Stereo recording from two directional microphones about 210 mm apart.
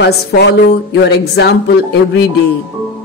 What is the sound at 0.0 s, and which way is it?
Speech, 50° left (ahead or behind).